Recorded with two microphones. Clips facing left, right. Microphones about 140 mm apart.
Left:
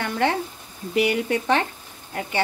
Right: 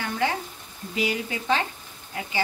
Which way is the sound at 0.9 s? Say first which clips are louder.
Left 6 dB; 60° left (ahead or behind).